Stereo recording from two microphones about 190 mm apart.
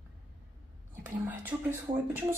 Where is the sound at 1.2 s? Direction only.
10° right (ahead or behind).